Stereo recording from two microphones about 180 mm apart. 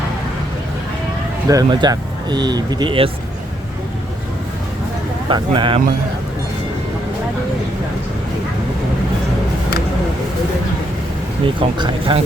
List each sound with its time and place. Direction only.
1.5 s speech: 20° right (ahead or behind)
5.3 s speech: 25° right (ahead or behind)
11.4 s speech: 30° right (ahead or behind)